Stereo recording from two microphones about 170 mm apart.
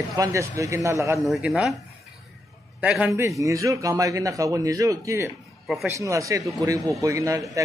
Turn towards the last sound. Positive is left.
turn(degrees=-20)  # may be behind; listen again after turning